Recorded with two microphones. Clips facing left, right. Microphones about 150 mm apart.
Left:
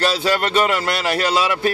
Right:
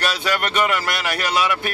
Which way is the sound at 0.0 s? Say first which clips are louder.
Left 4 dB; 30° left (ahead or behind).